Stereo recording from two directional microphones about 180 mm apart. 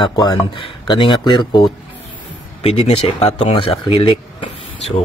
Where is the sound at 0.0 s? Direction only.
25° left (ahead or behind).